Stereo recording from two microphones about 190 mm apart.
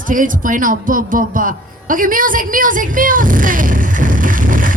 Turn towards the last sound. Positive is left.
turn(degrees=-45)  # may be behind; listen again after turning